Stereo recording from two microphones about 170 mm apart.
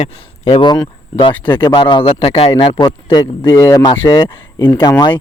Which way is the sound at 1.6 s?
25° left (ahead or behind).